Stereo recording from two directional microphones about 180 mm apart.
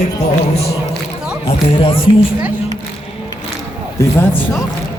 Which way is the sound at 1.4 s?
30° left (ahead or behind).